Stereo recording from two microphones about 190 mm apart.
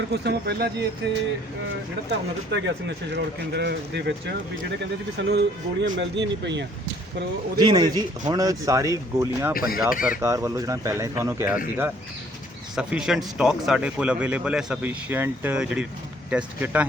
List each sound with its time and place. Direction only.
0.1 s speech: 60° right (ahead or behind)
2.5 s speech: 65° right (ahead or behind)
7.6 s a man's voice: 20° right (ahead or behind)
9.6 s speech: 50° left (ahead or behind)
10.1 s a man's voice: 15° right (ahead or behind)
12.7 s a man's voice: 5° right (ahead or behind)